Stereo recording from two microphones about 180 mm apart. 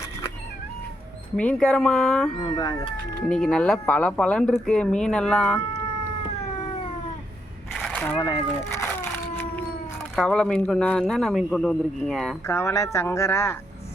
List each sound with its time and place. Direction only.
1.4 s speech: 5° left (ahead or behind)
2.5 s speech: 25° left (ahead or behind)
3.2 s speech: 5° left (ahead or behind)
7.7 s splash: 5° left (ahead or behind)
8.2 s cat: 20° left (ahead or behind)
10.2 s speech: 5° left (ahead or behind)
12.5 s speech: 15° left (ahead or behind)